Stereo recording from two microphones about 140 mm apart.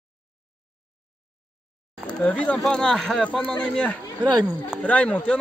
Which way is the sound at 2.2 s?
10° left (ahead or behind).